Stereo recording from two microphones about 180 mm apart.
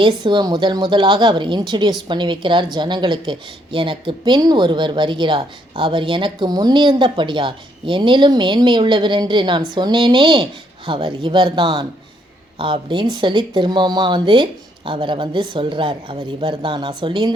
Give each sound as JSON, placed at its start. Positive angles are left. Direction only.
{"t": 0.0, "sound": "a woman's voice", "side_deg": -25}